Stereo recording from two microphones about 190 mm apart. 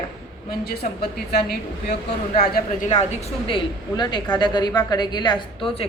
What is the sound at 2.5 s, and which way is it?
A woman's voice, 40° left (ahead or behind).